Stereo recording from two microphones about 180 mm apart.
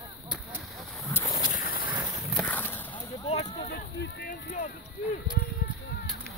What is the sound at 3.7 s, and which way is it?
Boat, 65° left (ahead or behind).